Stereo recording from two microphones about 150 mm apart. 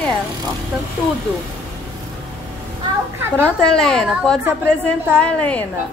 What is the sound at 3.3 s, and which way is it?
A woman's voice, 5° left (ahead or behind).